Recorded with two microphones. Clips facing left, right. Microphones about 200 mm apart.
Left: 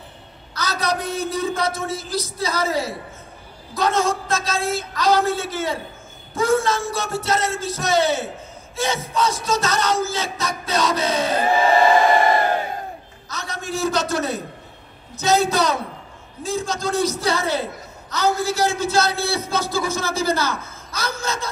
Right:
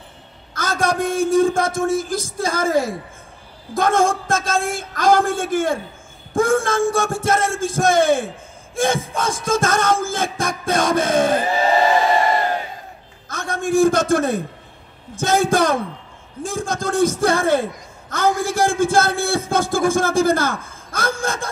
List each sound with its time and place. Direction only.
0.6 s a man's voice: 50° right (ahead or behind)
13.3 s a sound: 50° right (ahead or behind)
15.1 s a man's voice: 50° right (ahead or behind)